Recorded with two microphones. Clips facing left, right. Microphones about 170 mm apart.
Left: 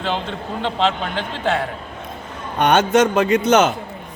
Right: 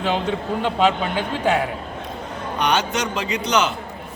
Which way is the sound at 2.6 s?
50° left (ahead or behind).